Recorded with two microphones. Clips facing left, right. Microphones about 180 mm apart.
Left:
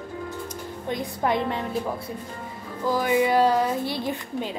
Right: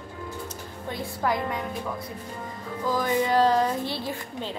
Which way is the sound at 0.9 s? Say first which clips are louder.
Left 2 dB; 20° left (ahead or behind).